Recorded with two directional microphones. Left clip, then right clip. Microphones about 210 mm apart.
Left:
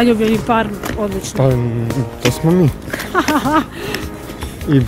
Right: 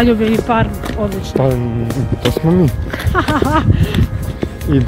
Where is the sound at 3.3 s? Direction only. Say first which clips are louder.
Even; 25° left (ahead or behind).